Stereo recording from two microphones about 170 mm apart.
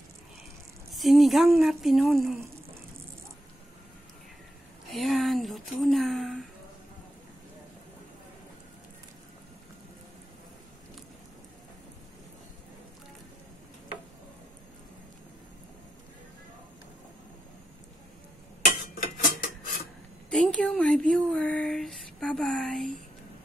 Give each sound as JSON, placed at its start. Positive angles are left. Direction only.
{"t": 0.9, "sound": "speech", "side_deg": 0}
{"t": 4.9, "sound": "speech", "side_deg": 0}
{"t": 18.9, "sound": "cutlery", "side_deg": 55}
{"t": 20.2, "sound": "a sound", "side_deg": 5}